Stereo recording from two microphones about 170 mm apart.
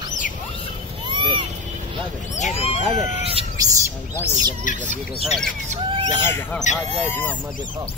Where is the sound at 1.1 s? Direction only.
30° right (ahead or behind).